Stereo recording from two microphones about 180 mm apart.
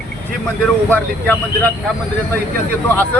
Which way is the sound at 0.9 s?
10° left (ahead or behind).